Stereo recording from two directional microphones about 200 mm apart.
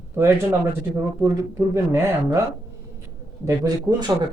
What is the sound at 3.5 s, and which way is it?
Speech, 20° right (ahead or behind).